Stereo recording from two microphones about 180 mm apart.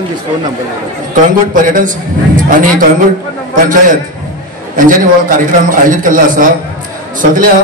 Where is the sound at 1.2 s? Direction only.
45° right (ahead or behind).